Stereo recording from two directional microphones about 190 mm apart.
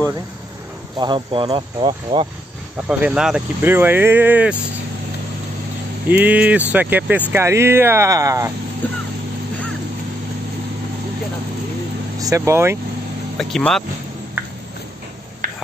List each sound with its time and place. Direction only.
0.9 s speech: 25° right (ahead or behind)
2.9 s speech: 5° right (ahead or behind)
6.0 s speech: 10° right (ahead or behind)
12.2 s speech: 15° right (ahead or behind)
13.4 s speech: 5° left (ahead or behind)